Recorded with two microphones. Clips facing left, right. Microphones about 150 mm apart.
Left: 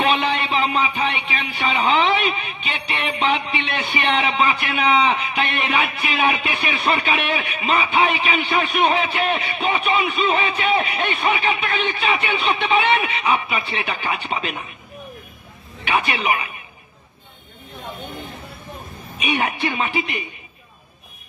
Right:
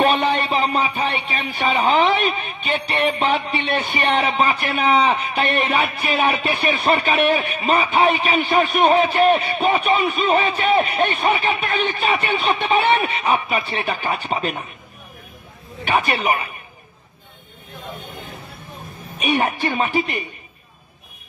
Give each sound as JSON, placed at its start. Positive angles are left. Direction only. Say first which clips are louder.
{"t": 0.0, "sound": "speech", "louder": "right 3 dB", "side_deg": -45}
{"t": 15.8, "sound": "speech", "louder": "right 2 dB", "side_deg": -45}
{"t": 19.1, "sound": "speech", "louder": "right 3 dB", "side_deg": -45}